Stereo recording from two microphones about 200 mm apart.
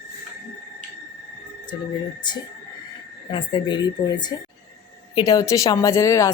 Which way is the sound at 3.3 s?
25° left (ahead or behind).